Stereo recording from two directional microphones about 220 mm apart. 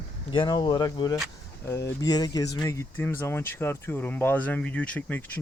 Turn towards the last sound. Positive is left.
turn(degrees=5)  # may be behind; listen again after turning